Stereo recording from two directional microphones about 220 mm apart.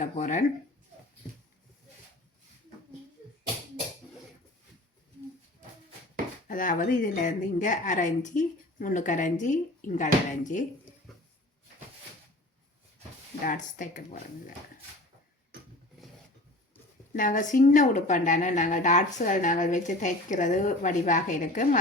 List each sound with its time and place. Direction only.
0.0 s speech: 35° left (ahead or behind)
6.5 s speech: 35° left (ahead or behind)
13.4 s speech: 35° left (ahead or behind)
17.1 s speech: 35° left (ahead or behind)